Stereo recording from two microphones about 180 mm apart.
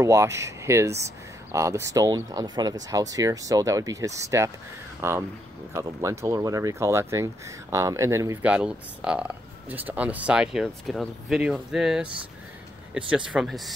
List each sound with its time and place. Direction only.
0.0 s speech: 15° right (ahead or behind); by 13.7 s centre (ahead or behind)